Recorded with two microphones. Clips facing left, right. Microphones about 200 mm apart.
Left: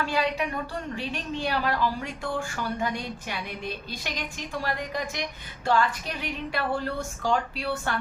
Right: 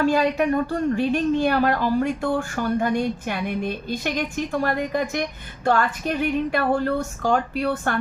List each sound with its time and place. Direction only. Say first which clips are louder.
0.0 s a woman's voice: right 8 dB; 50° right (ahead or behind)